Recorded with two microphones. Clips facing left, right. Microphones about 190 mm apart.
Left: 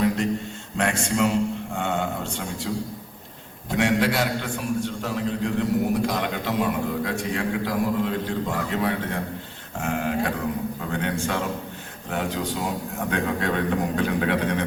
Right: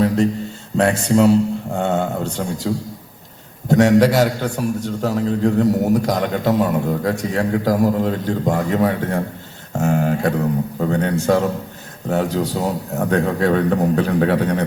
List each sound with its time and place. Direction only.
0.8 s a man's voice: 35° right (ahead or behind)
3.7 s a man's voice: 40° right (ahead or behind)